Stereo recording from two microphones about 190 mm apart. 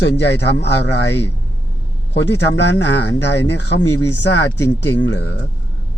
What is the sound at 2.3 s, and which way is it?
A man's voice, 65° left (ahead or behind).